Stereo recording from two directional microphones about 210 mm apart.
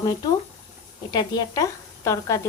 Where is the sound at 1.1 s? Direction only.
20° left (ahead or behind).